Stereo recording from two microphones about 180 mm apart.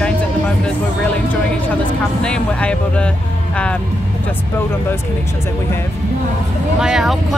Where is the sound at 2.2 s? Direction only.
5° left (ahead or behind).